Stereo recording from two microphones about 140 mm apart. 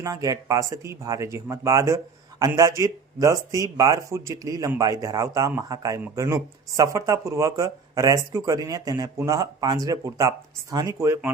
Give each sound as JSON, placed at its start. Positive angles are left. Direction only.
{"t": 0.0, "sound": "a man's voice", "side_deg": -25}